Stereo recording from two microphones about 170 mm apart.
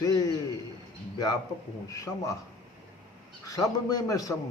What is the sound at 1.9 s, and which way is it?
Mantra, 20° left (ahead or behind).